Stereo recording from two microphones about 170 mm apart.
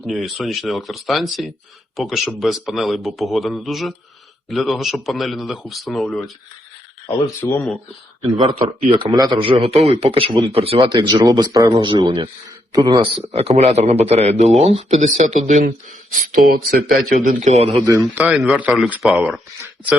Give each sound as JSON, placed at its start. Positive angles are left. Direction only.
{"t": 0.0, "sound": "a man's voice", "side_deg": 0}
{"t": 7.4, "sound": "speech", "side_deg": 15}
{"t": 8.9, "sound": "a man's voice", "side_deg": -25}
{"t": 10.8, "sound": "speech", "side_deg": -25}
{"t": 11.9, "sound": "a man's voice", "side_deg": -30}
{"t": 16.1, "sound": "speech", "side_deg": -55}
{"t": 17.5, "sound": "a man's voice", "side_deg": -40}
{"t": 17.8, "sound": "speech", "side_deg": -15}